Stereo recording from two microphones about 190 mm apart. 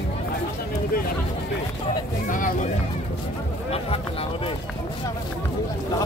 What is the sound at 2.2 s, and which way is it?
Vehicle, 45° left (ahead or behind).